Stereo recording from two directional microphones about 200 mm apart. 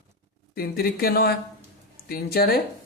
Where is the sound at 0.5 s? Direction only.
50° left (ahead or behind).